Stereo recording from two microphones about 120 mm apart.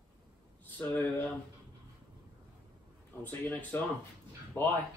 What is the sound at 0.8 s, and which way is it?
Speech, 15° left (ahead or behind).